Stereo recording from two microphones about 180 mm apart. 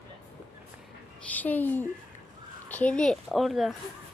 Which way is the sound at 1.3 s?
10° left (ahead or behind).